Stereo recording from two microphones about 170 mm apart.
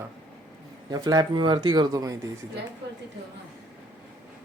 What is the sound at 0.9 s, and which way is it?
Speech, 20° right (ahead or behind).